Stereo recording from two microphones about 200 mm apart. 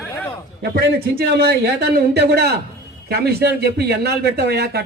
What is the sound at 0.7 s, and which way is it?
A man's voice, 50° right (ahead or behind).